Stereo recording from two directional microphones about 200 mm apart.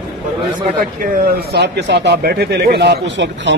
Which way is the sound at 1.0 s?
50° right (ahead or behind).